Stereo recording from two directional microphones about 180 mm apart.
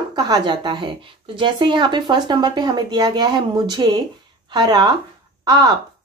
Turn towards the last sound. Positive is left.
turn(degrees=-20)  # may be behind; listen again after turning